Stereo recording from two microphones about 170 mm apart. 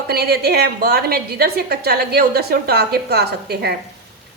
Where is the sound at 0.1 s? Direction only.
70° right (ahead or behind).